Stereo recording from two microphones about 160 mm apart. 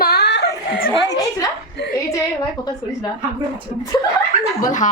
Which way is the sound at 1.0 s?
25° left (ahead or behind).